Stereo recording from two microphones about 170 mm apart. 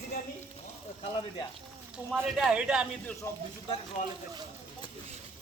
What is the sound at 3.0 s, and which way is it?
Speech, 10° left (ahead or behind).